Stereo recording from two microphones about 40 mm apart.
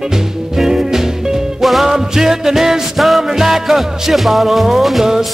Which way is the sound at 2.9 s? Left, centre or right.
Centre.